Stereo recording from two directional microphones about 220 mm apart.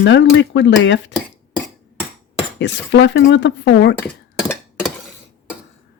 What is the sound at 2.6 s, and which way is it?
Speech, 55° left (ahead or behind).